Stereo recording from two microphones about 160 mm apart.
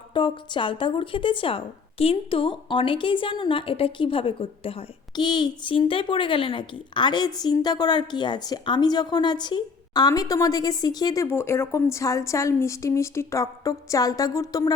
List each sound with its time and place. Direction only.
0.1 s speech: 30° left (ahead or behind)